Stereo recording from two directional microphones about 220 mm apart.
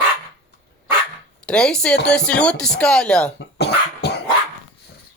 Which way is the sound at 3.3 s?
50° left (ahead or behind).